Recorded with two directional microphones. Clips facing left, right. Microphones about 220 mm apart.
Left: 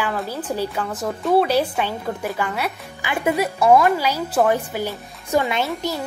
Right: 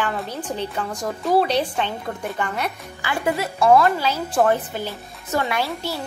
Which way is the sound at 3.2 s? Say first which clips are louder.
Left 2 dB; 20° left (ahead or behind).